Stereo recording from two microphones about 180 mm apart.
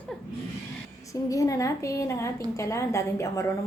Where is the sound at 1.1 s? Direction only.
20° left (ahead or behind).